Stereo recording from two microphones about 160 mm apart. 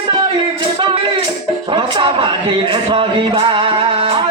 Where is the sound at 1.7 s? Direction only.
30° right (ahead or behind).